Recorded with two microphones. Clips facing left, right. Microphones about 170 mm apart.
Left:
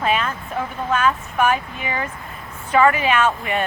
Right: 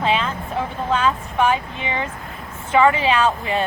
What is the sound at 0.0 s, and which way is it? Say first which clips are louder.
Vehicle: right 1 dB; 25° right (ahead or behind).